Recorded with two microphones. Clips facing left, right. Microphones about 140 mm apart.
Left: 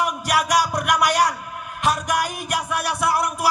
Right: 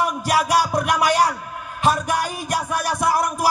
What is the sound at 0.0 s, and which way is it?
Music, 35° right (ahead or behind).